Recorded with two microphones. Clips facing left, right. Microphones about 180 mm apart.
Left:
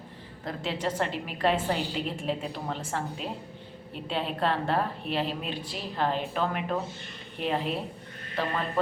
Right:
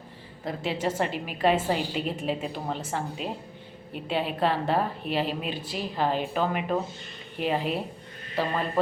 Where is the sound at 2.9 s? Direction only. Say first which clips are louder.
Right 2 dB; 5° right (ahead or behind).